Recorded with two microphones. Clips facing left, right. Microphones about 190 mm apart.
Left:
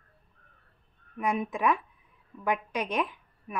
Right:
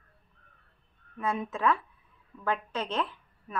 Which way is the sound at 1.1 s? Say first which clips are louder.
Left 2 dB; 15° left (ahead or behind).